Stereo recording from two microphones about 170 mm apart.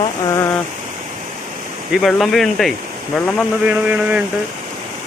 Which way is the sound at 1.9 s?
Centre (ahead or behind).